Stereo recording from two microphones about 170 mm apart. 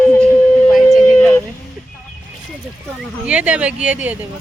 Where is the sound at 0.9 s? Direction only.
5° left (ahead or behind).